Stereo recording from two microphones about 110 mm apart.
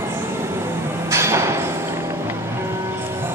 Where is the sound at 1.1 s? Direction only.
25° right (ahead or behind).